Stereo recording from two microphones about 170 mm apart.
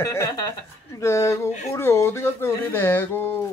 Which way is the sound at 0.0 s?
15° left (ahead or behind).